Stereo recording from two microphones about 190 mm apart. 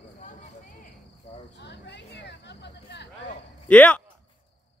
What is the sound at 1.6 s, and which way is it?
Hubbub, 65° left (ahead or behind).